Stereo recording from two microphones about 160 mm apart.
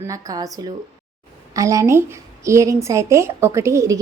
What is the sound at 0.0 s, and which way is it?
A woman's voice, 20° right (ahead or behind).